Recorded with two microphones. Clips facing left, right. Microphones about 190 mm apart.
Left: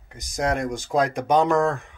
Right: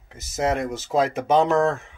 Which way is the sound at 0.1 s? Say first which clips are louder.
Right 1 dB; 5° right (ahead or behind).